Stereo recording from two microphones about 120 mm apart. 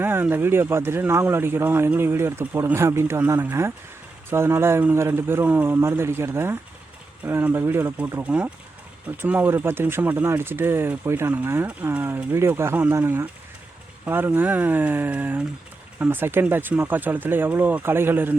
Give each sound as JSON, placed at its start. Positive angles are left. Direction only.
{"t": 0.0, "sound": "speech", "side_deg": -15}